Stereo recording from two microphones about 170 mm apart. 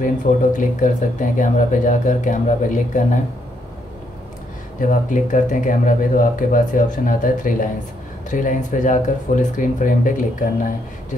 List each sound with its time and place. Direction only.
0.0 s speech: 50° left (ahead or behind)
4.7 s speech: 50° left (ahead or behind)